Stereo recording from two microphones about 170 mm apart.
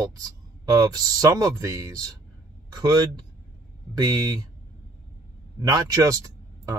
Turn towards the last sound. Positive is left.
turn(degrees=-20)  # may be behind; listen again after turning